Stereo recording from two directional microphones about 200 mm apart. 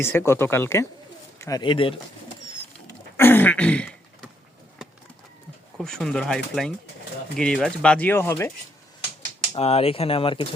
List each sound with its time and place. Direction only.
0.0 s speech: 10° left (ahead or behind)
3.2 s throat clearing: 10° left (ahead or behind)
5.7 s speech: centre (ahead or behind)
9.6 s speech: 30° left (ahead or behind)